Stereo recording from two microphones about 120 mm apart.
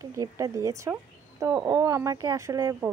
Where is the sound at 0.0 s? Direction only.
30° right (ahead or behind).